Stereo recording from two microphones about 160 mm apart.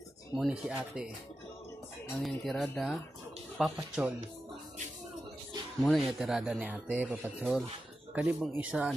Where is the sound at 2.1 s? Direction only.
Centre (ahead or behind).